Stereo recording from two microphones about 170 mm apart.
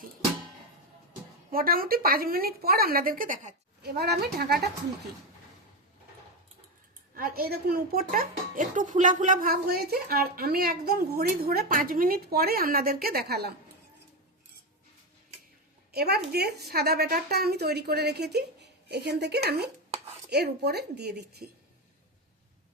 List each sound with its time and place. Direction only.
1.5 s a woman's voice: 60° right (ahead or behind)
3.8 s a woman's voice: 70° right (ahead or behind)
7.1 s a woman's voice: 60° right (ahead or behind)
15.9 s a woman's voice: 65° right (ahead or behind)